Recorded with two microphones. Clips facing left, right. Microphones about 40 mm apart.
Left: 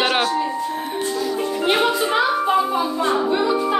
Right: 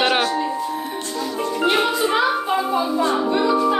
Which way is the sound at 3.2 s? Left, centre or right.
Centre.